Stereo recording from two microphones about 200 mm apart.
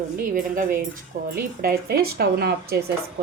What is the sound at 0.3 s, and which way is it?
Speech, 45° right (ahead or behind).